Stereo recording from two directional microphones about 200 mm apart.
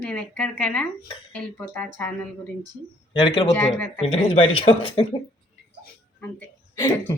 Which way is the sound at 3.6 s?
10° left (ahead or behind).